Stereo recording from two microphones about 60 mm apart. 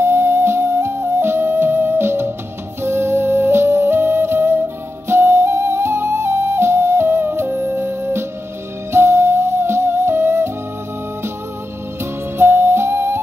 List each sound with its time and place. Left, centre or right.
0.0 s flute: right
2.8 s music: right
12.4 s music: right